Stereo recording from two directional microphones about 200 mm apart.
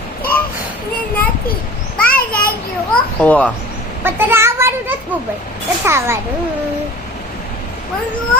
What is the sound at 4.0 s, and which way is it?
A child's voice, 10° right (ahead or behind).